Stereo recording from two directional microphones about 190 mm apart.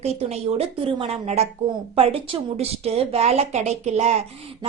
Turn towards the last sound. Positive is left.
turn(degrees=-35)  # may be behind; listen again after turning